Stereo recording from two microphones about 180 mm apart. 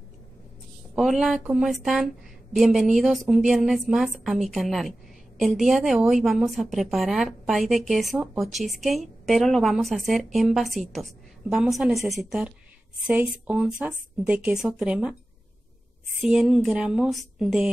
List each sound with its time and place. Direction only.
0.9 s a woman's voice: centre (ahead or behind)
16.2 s a woman's voice: 5° right (ahead or behind)